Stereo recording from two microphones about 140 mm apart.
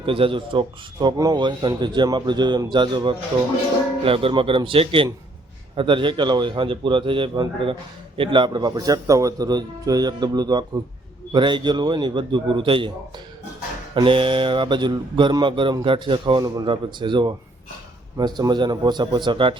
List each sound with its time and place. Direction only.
0.0 s mantra: 40° right (ahead or behind)
8.2 s a man's voice: 35° right (ahead or behind)
11.3 s mantra: 35° right (ahead or behind)
13.9 s mantra: 40° right (ahead or behind)